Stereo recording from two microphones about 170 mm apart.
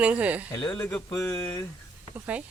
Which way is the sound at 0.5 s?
5° left (ahead or behind).